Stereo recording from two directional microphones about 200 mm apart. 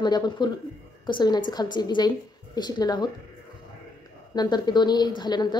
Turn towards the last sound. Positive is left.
turn(degrees=20)  # may be behind; listen again after turning